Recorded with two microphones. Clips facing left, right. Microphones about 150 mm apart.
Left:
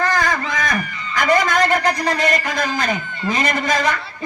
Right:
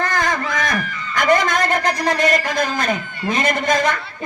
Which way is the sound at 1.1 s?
50° right (ahead or behind).